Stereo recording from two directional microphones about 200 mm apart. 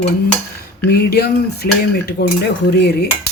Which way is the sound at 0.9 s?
50° left (ahead or behind).